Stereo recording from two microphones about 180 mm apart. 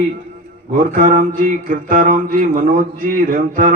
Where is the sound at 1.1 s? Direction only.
45° right (ahead or behind).